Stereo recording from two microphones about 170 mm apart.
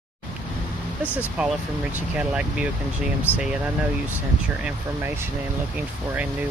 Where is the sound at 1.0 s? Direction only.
10° left (ahead or behind).